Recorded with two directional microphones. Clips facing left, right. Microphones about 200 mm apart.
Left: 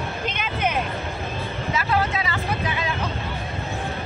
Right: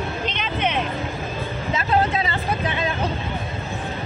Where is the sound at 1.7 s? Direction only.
25° right (ahead or behind).